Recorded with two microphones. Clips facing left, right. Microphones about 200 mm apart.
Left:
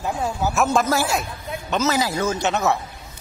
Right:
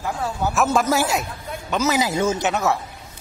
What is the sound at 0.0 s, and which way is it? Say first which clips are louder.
Speech: left 1 dB; 20° left (ahead or behind).